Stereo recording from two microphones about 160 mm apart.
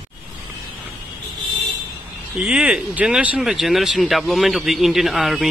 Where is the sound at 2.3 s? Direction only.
5° right (ahead or behind).